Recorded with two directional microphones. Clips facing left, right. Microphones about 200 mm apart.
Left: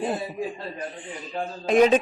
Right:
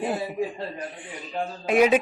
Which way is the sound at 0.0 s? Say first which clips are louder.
Right 1 dB; 15° right (ahead or behind).